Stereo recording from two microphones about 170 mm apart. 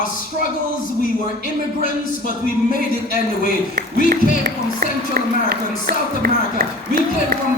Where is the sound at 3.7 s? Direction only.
60° right (ahead or behind).